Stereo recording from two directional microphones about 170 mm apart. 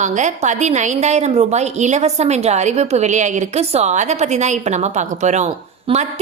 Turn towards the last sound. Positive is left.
turn(degrees=-40)  # may be behind; listen again after turning